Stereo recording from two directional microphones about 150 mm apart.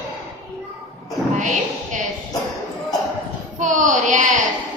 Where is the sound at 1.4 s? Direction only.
55° right (ahead or behind).